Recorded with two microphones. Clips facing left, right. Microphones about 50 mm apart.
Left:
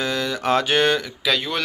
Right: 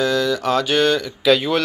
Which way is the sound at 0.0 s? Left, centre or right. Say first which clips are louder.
Right 5 dB; left.